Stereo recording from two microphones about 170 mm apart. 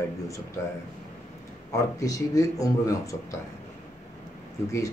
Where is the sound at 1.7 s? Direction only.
20° left (ahead or behind).